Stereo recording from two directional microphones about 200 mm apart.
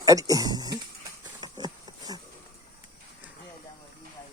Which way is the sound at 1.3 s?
20° right (ahead or behind).